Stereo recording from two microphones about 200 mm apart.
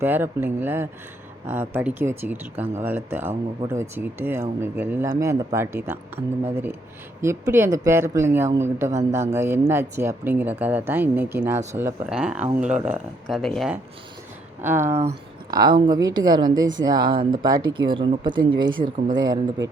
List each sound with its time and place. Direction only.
0.0 s speech: 10° right (ahead or behind)
7.2 s speech: 15° right (ahead or behind)
12.5 s speech: 35° right (ahead or behind)
12.8 s speech: 5° right (ahead or behind)
14.6 s a woman's voice: 10° right (ahead or behind)